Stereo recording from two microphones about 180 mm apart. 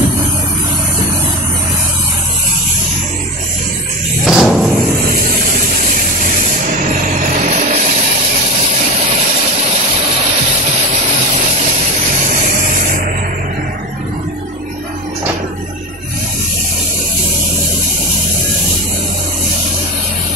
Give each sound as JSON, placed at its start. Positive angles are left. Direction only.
{"t": 4.3, "sound": "thump", "side_deg": 0}
{"t": 7.4, "sound": "vehicle", "side_deg": -40}